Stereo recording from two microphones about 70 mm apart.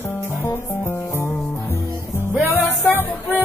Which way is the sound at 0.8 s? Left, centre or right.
Left.